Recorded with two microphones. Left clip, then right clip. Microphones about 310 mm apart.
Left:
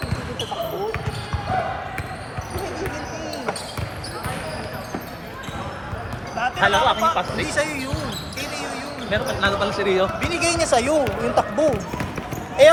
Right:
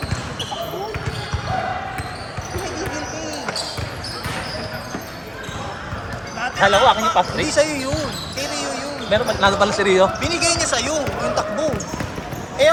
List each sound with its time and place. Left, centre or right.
6.6 s a sound: centre
7.4 s basketball bounce: centre
9.1 s speech: centre
10.2 s speech: centre; by 12.7 s left